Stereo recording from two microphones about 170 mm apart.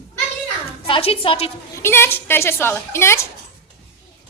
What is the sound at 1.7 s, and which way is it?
A woman's voice, 15° left (ahead or behind).